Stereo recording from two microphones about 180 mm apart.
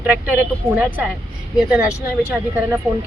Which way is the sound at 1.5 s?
5° right (ahead or behind).